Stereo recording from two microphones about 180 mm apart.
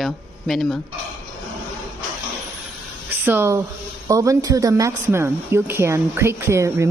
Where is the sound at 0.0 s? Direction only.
Centre (ahead or behind).